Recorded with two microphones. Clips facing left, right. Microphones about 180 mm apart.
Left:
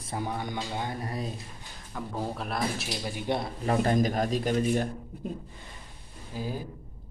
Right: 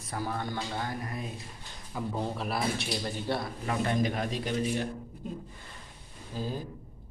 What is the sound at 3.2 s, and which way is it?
Speech, 20° left (ahead or behind).